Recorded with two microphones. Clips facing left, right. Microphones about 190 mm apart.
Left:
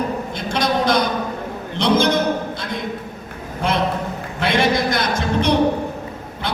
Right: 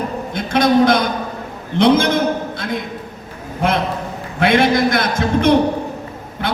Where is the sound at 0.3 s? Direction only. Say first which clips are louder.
Right 8 dB; 55° right (ahead or behind).